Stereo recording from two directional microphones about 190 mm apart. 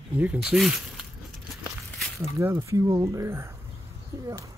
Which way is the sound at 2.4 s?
15° right (ahead or behind).